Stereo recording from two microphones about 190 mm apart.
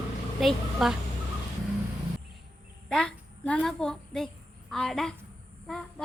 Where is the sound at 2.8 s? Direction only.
5° left (ahead or behind).